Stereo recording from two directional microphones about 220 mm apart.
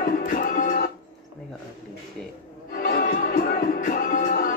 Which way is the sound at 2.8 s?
40° left (ahead or behind).